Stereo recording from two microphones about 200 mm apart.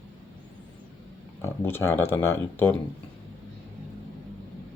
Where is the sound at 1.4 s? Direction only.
10° left (ahead or behind).